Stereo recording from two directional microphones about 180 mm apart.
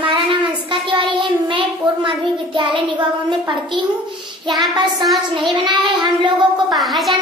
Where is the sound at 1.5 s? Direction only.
25° right (ahead or behind).